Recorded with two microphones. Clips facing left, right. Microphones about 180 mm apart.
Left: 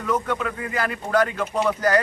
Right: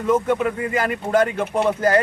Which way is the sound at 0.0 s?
25° right (ahead or behind).